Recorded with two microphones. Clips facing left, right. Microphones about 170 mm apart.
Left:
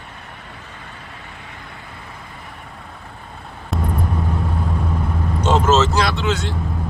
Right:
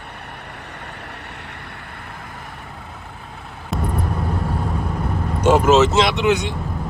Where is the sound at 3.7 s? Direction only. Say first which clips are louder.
Even; centre (ahead or behind).